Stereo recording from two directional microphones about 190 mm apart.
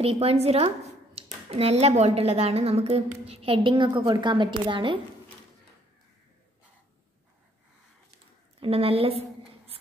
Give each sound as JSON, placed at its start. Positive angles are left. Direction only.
{"t": 0.0, "sound": "speech", "side_deg": -30}
{"t": 8.5, "sound": "a woman's voice", "side_deg": -30}